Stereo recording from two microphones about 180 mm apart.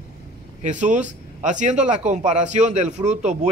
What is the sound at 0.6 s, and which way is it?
A man's voice, 40° right (ahead or behind).